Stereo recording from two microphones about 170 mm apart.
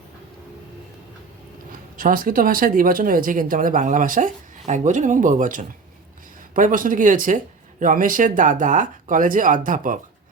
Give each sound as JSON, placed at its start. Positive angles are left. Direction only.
{"t": 2.0, "sound": "speech", "side_deg": -55}